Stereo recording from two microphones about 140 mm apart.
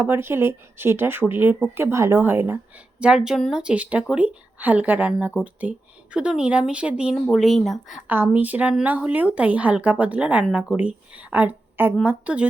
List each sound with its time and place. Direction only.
0.0 s speech: 15° right (ahead or behind)
3.0 s speech: 5° right (ahead or behind)
8.0 s speech: 15° right (ahead or behind)